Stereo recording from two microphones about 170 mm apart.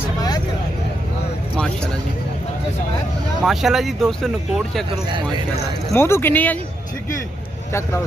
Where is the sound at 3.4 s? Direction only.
Centre (ahead or behind).